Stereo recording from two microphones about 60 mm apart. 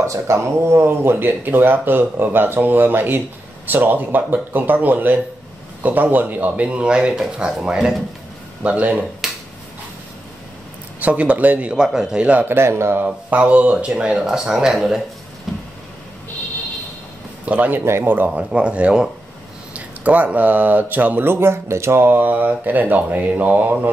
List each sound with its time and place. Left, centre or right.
0.0 s speech: right
0.8 s speech: right
9.2 s finger snapping: centre
11.0 s speech: right
11.7 s a man's voice: centre
12.4 s speech: right
13.0 s a man's voice: right; by 15.0 s centre
17.5 s speech: right
18.4 s a man's voice: centre